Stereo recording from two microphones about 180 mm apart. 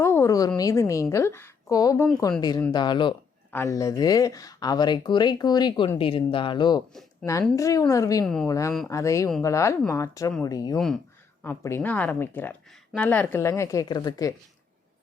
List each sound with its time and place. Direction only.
0.0 s a woman's voice: 15° left (ahead or behind)
8.2 s a woman's voice: centre (ahead or behind)
8.4 s a woman's voice: 20° left (ahead or behind)
10.8 s a woman's voice: centre (ahead or behind)
11.4 s a woman's voice: 10° left (ahead or behind)